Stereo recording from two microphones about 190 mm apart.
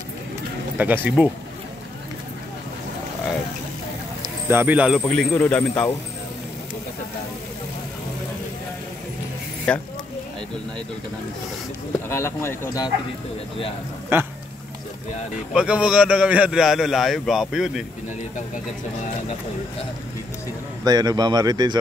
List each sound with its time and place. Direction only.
0.7 s speech: 10° right (ahead or behind)
4.2 s speech: 10° right (ahead or behind)
5.0 s speech: 5° left (ahead or behind)
9.7 s a man's voice: 5° left (ahead or behind)
12.1 s speech: 15° left (ahead or behind)
14.1 s speech: 10° right (ahead or behind)
15.5 s a man's voice: 5° right (ahead or behind)
20.8 s speech: 20° right (ahead or behind)